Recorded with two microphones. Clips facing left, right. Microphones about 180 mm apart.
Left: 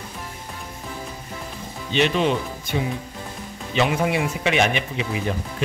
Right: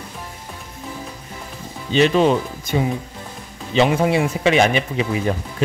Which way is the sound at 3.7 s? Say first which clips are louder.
Right 5 dB; 30° right (ahead or behind).